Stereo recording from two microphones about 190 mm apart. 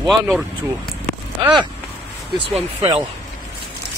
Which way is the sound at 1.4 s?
25° right (ahead or behind).